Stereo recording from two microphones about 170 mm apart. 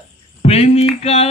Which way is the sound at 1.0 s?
40° left (ahead or behind).